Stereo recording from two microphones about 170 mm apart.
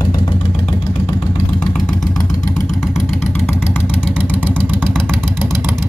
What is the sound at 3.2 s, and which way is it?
Vehicle, 15° left (ahead or behind).